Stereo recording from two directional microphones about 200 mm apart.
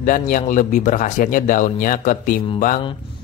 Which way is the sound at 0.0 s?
40° left (ahead or behind).